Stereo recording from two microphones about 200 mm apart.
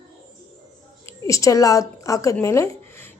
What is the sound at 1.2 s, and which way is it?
A woman's voice, 15° left (ahead or behind).